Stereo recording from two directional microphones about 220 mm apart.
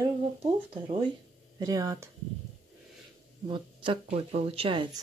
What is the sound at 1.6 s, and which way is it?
Speech, 15° right (ahead or behind).